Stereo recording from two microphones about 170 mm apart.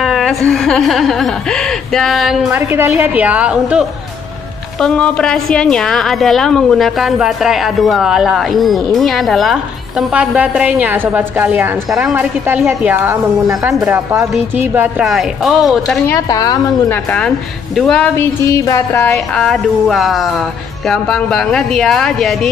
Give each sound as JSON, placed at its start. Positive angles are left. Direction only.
{"t": 0.0, "sound": "a woman's voice", "side_deg": 0}
{"t": 2.7, "sound": "a woman's voice", "side_deg": -10}
{"t": 4.7, "sound": "a woman's voice", "side_deg": 5}
{"t": 16.1, "sound": "a woman's voice", "side_deg": 20}
{"t": 17.7, "sound": "speech", "side_deg": 5}
{"t": 19.1, "sound": "a woman's voice", "side_deg": 0}